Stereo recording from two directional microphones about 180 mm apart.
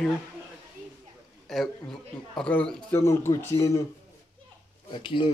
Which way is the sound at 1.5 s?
Centre (ahead or behind).